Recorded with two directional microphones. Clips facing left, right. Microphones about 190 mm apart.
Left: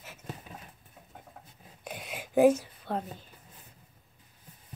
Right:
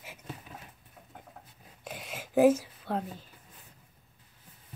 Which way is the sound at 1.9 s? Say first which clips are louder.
Left 1 dB; centre (ahead or behind).